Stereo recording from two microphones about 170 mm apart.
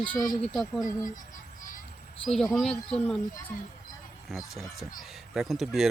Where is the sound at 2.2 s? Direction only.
5° left (ahead or behind).